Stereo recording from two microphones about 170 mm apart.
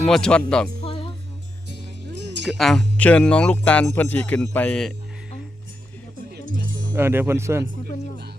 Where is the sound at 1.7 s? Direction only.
90° right.